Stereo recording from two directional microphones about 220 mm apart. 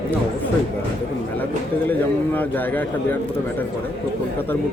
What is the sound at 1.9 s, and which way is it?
A man's voice, 10° left (ahead or behind).